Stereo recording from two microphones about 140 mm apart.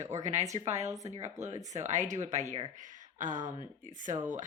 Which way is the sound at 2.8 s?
65° right (ahead or behind).